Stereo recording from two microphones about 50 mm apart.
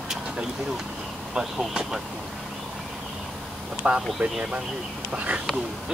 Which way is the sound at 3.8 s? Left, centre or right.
Right.